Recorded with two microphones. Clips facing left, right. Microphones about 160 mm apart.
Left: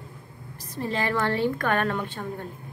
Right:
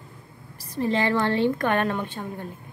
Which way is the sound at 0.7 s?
20° right (ahead or behind).